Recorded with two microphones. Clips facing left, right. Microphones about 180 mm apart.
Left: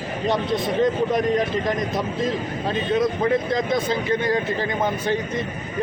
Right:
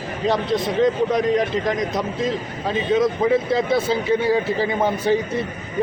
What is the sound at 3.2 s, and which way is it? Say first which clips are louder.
A man's voice: right 3 dB; 5° right (ahead or behind).